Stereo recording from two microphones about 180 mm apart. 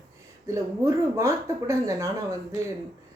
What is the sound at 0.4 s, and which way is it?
Speech, 15° right (ahead or behind).